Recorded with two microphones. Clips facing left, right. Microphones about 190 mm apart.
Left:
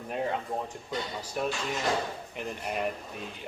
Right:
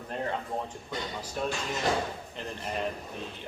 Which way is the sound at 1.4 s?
10° left (ahead or behind).